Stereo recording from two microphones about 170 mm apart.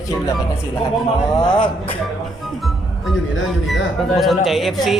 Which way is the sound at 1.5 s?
30° left (ahead or behind).